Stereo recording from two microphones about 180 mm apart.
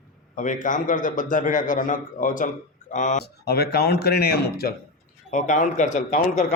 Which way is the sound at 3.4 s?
60° left (ahead or behind).